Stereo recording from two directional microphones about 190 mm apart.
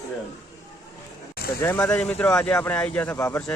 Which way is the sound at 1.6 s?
10° left (ahead or behind).